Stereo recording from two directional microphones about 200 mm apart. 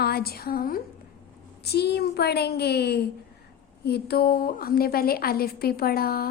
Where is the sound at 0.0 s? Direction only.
50° left (ahead or behind).